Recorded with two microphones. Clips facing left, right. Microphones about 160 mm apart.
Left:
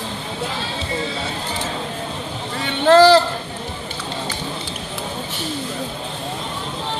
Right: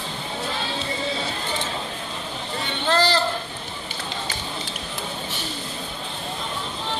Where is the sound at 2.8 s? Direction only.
90° left.